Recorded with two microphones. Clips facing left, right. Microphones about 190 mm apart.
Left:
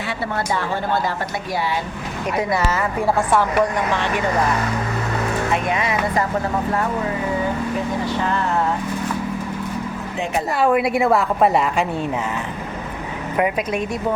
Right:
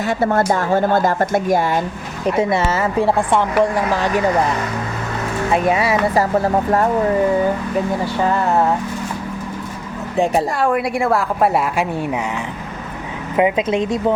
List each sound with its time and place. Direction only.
0.1 s a woman's voice: 45° right (ahead or behind)
2.2 s a woman's voice: 25° right (ahead or behind)
5.5 s speech: 35° right (ahead or behind)
10.6 s a woman's voice: centre (ahead or behind)
13.3 s a woman's voice: 20° right (ahead or behind)